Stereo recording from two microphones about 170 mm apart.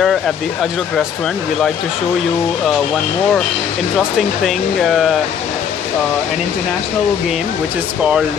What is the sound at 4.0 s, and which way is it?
Speech, centre (ahead or behind).